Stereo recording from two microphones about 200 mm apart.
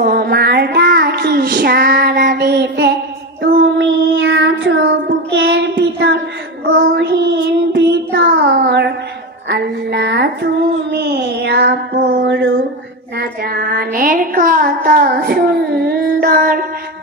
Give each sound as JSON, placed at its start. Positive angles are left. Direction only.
{"t": 0.0, "sound": "child singing", "side_deg": -50}
{"t": 13.2, "sound": "music", "side_deg": -50}